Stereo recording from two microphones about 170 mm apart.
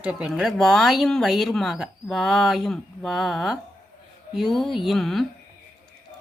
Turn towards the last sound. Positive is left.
turn(degrees=0)  # may be behind; listen again after turning